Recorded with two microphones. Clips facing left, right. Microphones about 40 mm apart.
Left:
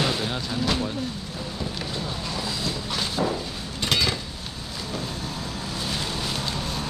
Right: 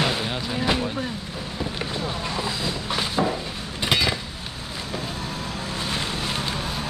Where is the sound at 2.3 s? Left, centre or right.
Right.